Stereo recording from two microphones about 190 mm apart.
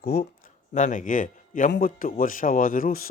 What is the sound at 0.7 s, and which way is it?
Speech, 40° left (ahead or behind).